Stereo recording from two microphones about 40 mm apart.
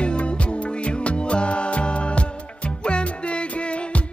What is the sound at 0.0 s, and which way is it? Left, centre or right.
Music, left.